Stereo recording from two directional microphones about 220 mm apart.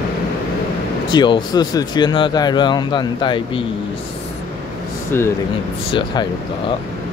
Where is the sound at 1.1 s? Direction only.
20° left (ahead or behind).